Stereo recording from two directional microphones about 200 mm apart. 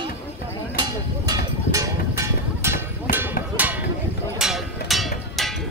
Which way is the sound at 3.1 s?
45° left (ahead or behind).